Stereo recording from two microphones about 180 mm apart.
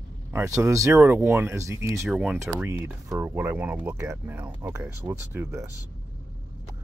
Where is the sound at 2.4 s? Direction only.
15° right (ahead or behind).